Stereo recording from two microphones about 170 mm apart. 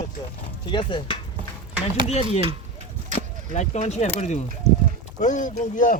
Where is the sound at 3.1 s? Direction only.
40° left (ahead or behind).